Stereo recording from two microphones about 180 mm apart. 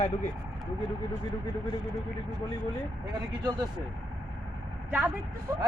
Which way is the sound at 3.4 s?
20° right (ahead or behind).